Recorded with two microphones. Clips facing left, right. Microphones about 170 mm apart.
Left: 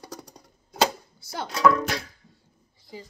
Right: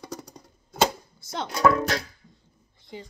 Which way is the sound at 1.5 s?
5° right (ahead or behind).